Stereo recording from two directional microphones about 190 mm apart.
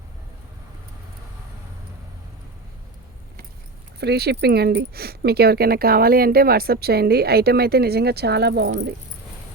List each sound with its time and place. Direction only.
4.0 s speech: 60° right (ahead or behind)